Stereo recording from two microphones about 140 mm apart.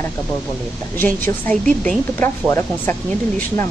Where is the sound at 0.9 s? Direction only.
10° left (ahead or behind).